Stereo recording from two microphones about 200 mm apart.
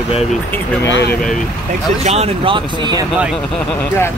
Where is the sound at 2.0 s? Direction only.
30° right (ahead or behind).